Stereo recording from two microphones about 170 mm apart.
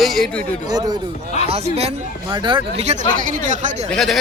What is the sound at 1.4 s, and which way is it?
Speech, 40° right (ahead or behind).